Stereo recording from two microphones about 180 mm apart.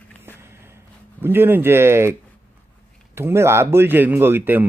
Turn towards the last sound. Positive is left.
turn(degrees=-10)  # may be behind; listen again after turning